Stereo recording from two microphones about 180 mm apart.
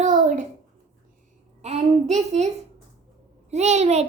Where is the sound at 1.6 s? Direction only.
40° right (ahead or behind).